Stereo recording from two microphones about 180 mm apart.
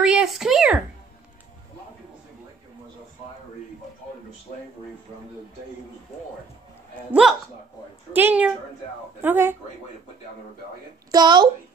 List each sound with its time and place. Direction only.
0.0 s a sound: 5° right (ahead or behind)
7.1 s speech: 5° right (ahead or behind)
11.1 s a woman's voice: 25° right (ahead or behind)